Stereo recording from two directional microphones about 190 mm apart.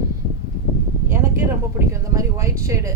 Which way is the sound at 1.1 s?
15° right (ahead or behind).